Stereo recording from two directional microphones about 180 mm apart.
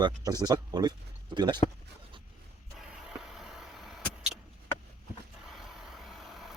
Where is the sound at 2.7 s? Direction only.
5° right (ahead or behind).